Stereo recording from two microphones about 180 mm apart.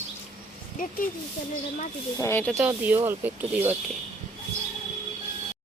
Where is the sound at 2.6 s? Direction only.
10° right (ahead or behind).